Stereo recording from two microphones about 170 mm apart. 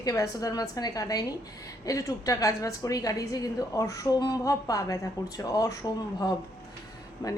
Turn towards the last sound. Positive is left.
turn(degrees=25)  # may be behind; listen again after turning